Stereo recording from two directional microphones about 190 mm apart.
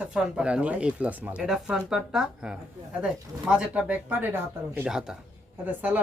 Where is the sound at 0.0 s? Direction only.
5° right (ahead or behind).